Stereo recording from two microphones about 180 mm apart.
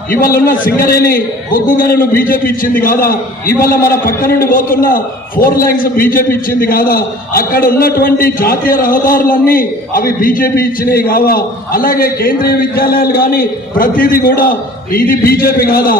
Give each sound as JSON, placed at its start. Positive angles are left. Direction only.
{"t": 0.1, "sound": "a man's voice", "side_deg": 50}